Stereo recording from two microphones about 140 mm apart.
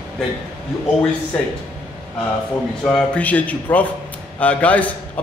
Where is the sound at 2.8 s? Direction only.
10° left (ahead or behind).